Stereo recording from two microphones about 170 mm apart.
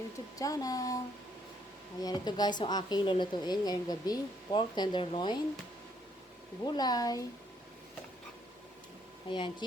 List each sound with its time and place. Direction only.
0.3 s a woman's voice: 20° left (ahead or behind)
6.7 s a woman's voice: 25° left (ahead or behind)
9.3 s a woman's voice: 25° left (ahead or behind)